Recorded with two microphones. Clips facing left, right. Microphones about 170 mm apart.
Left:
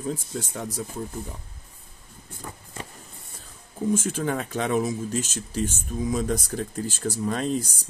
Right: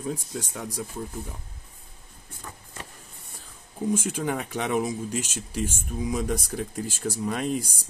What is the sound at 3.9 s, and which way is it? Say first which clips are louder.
Speech: left 2 dB; 10° right (ahead or behind).